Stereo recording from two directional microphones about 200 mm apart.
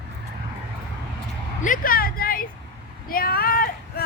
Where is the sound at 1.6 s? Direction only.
45° left (ahead or behind).